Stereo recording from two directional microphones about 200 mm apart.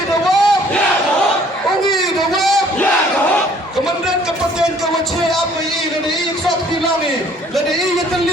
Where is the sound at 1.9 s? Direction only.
Centre (ahead or behind).